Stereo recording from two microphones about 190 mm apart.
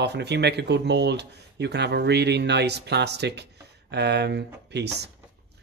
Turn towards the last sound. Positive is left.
turn(degrees=-65)  # may be behind; listen again after turning